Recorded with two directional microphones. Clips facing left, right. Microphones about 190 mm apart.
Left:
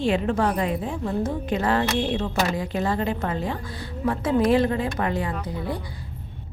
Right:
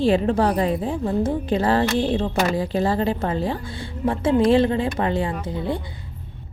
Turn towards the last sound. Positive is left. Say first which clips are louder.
# right 4 dB
turn(degrees=-25)  # may be behind; listen again after turning